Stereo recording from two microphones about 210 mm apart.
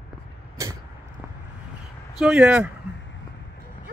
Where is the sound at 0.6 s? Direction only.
15° right (ahead or behind).